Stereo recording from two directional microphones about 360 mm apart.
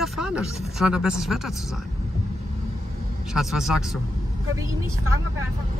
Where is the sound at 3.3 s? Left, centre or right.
Centre.